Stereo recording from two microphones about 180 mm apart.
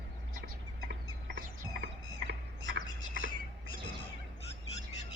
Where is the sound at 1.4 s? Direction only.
70° right (ahead or behind); by 3.3 s 90° right.